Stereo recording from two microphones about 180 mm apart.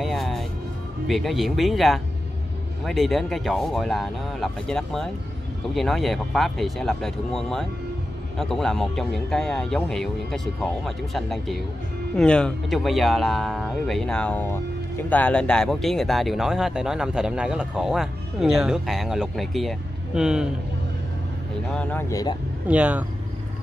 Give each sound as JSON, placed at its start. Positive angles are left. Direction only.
{"t": 0.0, "sound": "music", "side_deg": 0}
{"t": 1.0, "sound": "speech", "side_deg": 0}
{"t": 21.7, "sound": "speech", "side_deg": 5}
{"t": 22.1, "sound": "speech", "side_deg": 20}
{"t": 22.7, "sound": "speech", "side_deg": -10}